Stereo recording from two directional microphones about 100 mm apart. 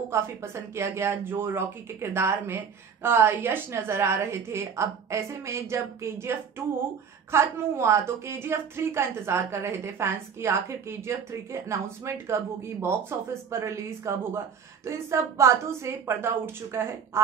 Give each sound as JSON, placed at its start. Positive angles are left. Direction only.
{"t": 0.1, "sound": "a woman's voice", "side_deg": -25}